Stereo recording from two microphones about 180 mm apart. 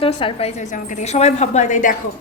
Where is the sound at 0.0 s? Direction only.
30° left (ahead or behind); by 2.0 s 45° left (ahead or behind).